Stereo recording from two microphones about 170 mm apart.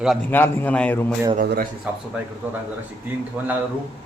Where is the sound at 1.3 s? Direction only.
65° right (ahead or behind).